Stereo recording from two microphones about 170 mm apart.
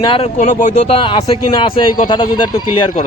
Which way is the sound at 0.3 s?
45° left (ahead or behind).